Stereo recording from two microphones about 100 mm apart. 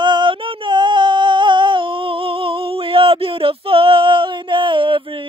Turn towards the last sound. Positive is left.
turn(degrees=-60)  # may be behind; listen again after turning